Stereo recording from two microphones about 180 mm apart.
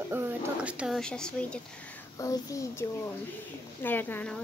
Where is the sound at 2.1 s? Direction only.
20° left (ahead or behind).